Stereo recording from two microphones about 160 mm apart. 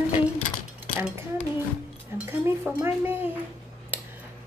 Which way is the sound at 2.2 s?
10° right (ahead or behind).